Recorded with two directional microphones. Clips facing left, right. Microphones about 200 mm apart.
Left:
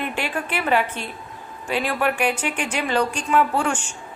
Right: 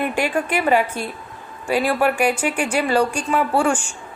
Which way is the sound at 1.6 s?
10° right (ahead or behind).